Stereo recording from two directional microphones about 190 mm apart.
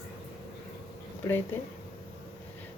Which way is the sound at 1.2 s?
15° left (ahead or behind).